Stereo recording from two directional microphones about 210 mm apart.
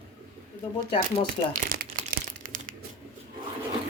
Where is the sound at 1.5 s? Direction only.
40° right (ahead or behind).